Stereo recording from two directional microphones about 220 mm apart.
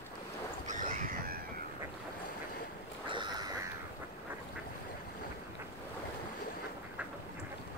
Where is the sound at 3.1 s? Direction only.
20° right (ahead or behind).